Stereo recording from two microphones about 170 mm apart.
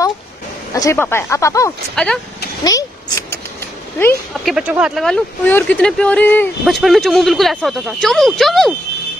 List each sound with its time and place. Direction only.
0.7 s speech: 15° left (ahead or behind)
2.6 s vehicle: 20° left (ahead or behind)
4.5 s speech: 5° right (ahead or behind); by 6.5 s 10° left (ahead or behind)
6.6 s speech: centre (ahead or behind)